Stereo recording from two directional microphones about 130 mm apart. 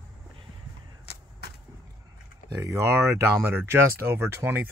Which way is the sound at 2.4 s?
25° right (ahead or behind).